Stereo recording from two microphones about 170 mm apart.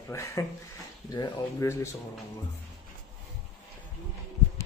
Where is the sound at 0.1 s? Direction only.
15° left (ahead or behind).